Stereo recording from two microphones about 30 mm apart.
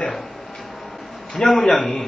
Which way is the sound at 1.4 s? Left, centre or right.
Left.